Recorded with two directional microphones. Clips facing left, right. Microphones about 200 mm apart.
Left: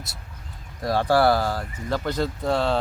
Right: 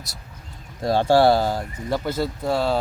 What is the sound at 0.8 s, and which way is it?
Speech, 25° right (ahead or behind).